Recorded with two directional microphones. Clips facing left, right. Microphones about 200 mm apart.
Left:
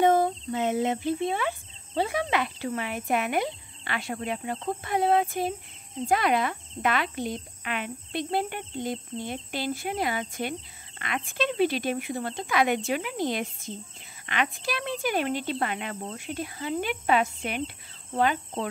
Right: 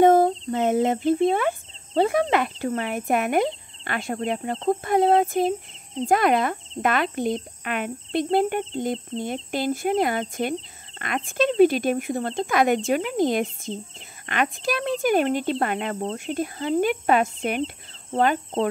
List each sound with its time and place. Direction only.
0.0 s speech: 50° right (ahead or behind)